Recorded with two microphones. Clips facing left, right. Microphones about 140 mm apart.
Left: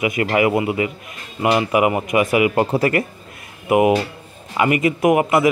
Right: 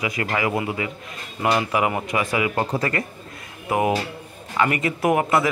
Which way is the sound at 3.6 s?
15° left (ahead or behind).